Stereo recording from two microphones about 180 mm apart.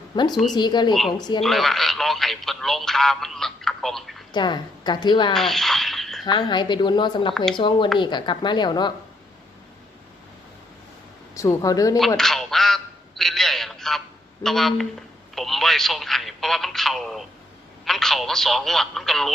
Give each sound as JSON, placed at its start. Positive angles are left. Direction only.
{"t": 0.1, "sound": "a woman's voice", "side_deg": 25}
{"t": 1.4, "sound": "speech", "side_deg": 0}
{"t": 4.3, "sound": "a woman's voice", "side_deg": 25}
{"t": 5.3, "sound": "a sound", "side_deg": 0}
{"t": 6.2, "sound": "a woman's voice", "side_deg": 25}
{"t": 11.3, "sound": "a woman's voice", "side_deg": 20}
{"t": 11.9, "sound": "quack", "side_deg": 0}
{"t": 14.4, "sound": "speech", "side_deg": 0}